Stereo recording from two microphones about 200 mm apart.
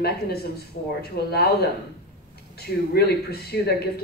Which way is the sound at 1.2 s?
50° left (ahead or behind).